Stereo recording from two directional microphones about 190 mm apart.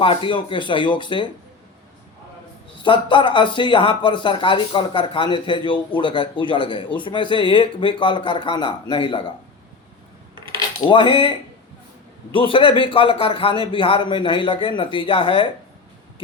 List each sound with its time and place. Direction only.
0.0 s speech: 25° left (ahead or behind)
2.7 s speech: 25° left (ahead or behind)
10.8 s speech: 25° left (ahead or behind)